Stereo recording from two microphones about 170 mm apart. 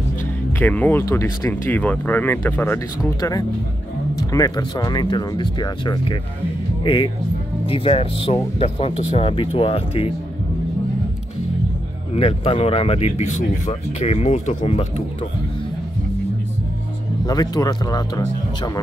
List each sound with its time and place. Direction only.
0.5 s speech: 10° left (ahead or behind); by 10.1 s 35° left (ahead or behind)
12.1 s speech: 35° left (ahead or behind)
17.3 s speech: 20° left (ahead or behind)